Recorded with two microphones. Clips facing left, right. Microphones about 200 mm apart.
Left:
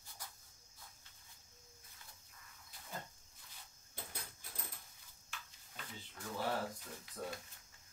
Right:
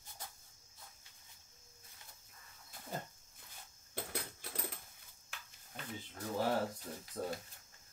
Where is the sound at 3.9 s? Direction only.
75° right (ahead or behind).